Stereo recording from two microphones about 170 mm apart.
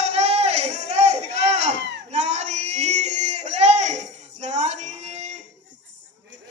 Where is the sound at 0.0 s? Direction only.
40° right (ahead or behind).